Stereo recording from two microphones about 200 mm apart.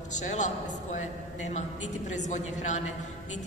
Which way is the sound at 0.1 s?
35° left (ahead or behind).